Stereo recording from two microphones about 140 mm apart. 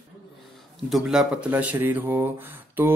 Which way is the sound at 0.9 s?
5° right (ahead or behind).